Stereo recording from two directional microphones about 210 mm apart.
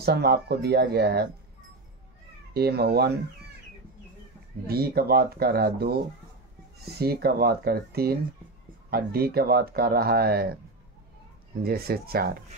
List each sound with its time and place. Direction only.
0.0 s speech: 50° right (ahead or behind)
2.5 s speech: 50° right (ahead or behind)
4.6 s speech: 45° right (ahead or behind)
11.6 s speech: 45° right (ahead or behind)